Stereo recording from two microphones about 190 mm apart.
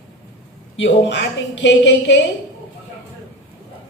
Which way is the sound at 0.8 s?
70° left (ahead or behind).